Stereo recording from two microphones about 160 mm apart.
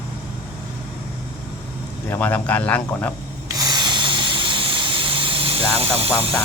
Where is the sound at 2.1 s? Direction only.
10° left (ahead or behind).